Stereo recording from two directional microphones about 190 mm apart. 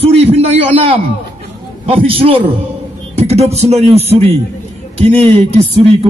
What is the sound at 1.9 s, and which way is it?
A man's voice, 30° right (ahead or behind).